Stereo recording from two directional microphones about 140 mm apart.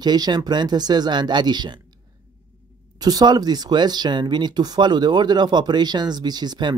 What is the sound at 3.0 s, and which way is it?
Speech, 30° right (ahead or behind).